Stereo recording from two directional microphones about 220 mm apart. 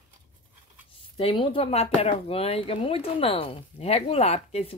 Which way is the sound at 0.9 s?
25° left (ahead or behind).